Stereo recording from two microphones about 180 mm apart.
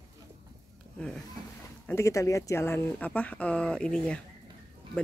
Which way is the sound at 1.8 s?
15° left (ahead or behind).